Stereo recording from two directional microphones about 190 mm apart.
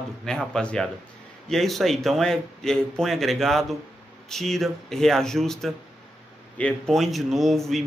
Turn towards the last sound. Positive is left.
turn(degrees=0)  # may be behind; listen again after turning